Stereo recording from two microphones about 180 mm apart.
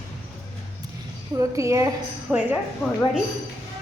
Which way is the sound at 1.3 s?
15° right (ahead or behind).